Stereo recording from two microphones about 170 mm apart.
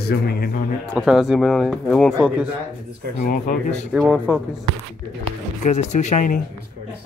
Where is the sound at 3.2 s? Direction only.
45° left (ahead or behind).